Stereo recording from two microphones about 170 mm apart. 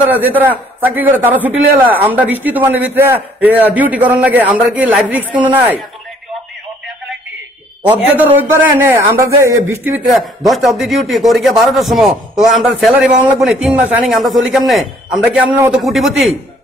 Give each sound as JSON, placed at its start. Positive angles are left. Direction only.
{"t": 0.1, "sound": "a man's voice", "side_deg": -10}
{"t": 5.3, "sound": "speech", "side_deg": -30}
{"t": 7.8, "sound": "a man's voice", "side_deg": -10}
{"t": 10.0, "sound": "a man's voice", "side_deg": 0}